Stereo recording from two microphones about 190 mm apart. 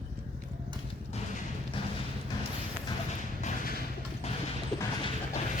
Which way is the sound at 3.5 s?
40° left (ahead or behind).